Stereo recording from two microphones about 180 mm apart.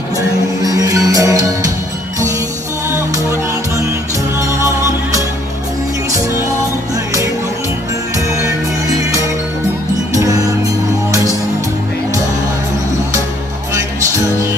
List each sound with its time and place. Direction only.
0.6 s music: 20° right (ahead or behind)
10.1 s music: 20° right (ahead or behind)